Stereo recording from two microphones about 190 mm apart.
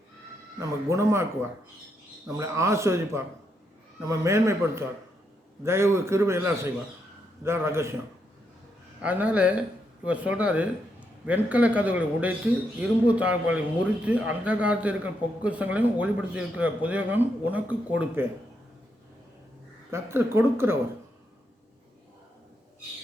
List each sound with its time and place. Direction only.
0.9 s a man's voice: 15° right (ahead or behind)
9.0 s a man's voice: 5° right (ahead or behind)
19.9 s a man's voice: 15° right (ahead or behind)